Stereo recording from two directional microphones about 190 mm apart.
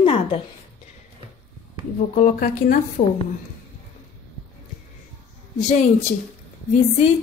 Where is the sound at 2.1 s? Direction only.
40° left (ahead or behind).